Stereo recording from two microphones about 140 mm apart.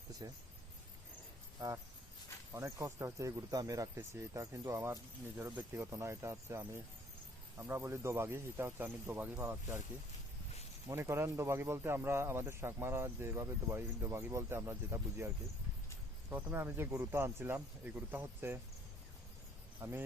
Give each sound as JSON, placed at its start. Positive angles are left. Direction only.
{"t": 0.2, "sound": "speech", "side_deg": -25}
{"t": 1.6, "sound": "speech", "side_deg": -25}
{"t": 10.8, "sound": "speech", "side_deg": -20}
{"t": 16.3, "sound": "speech", "side_deg": -15}
{"t": 19.8, "sound": "speech", "side_deg": -15}